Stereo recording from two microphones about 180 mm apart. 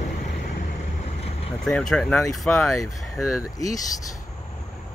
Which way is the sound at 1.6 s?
5° left (ahead or behind).